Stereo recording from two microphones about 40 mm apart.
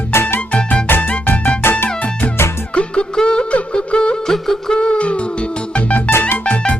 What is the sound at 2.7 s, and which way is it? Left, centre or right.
Music, left.